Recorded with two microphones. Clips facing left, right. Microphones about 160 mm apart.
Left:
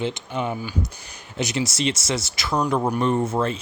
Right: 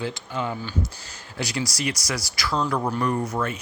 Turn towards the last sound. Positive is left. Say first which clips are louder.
# left 4 dB
turn(degrees=30)  # may be behind; listen again after turning